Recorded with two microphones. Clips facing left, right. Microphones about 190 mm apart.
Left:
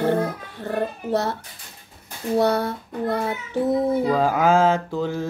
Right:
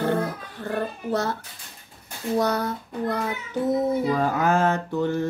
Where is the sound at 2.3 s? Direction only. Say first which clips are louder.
Left 3 dB; 25° left (ahead or behind).